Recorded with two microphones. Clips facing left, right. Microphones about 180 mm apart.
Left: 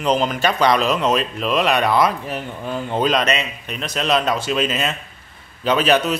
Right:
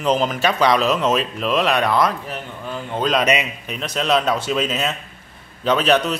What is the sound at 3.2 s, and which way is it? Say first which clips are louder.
Speech: right 2 dB; 10° right (ahead or behind).